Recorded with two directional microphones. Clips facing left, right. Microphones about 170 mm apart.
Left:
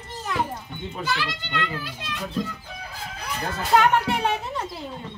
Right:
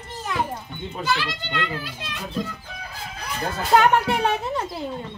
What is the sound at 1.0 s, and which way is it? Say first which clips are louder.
Speech: right 3 dB; 30° right (ahead or behind).